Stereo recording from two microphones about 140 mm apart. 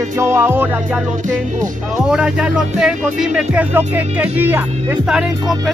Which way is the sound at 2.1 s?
5° right (ahead or behind).